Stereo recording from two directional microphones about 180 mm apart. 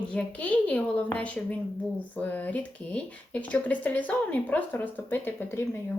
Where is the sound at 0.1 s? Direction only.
5° left (ahead or behind).